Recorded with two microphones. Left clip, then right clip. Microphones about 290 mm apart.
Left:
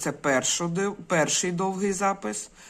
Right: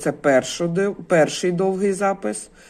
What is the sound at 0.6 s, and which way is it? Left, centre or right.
Speech, centre.